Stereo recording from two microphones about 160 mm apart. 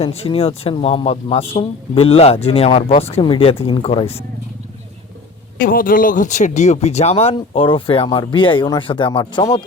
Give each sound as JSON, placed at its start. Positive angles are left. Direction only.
{"t": 0.0, "sound": "speech", "side_deg": 40}
{"t": 5.5, "sound": "speech", "side_deg": 65}